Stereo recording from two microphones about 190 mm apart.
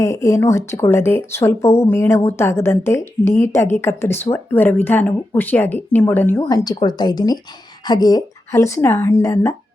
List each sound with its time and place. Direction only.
0.0 s speech: 15° left (ahead or behind)
6.5 s speech: 20° left (ahead or behind)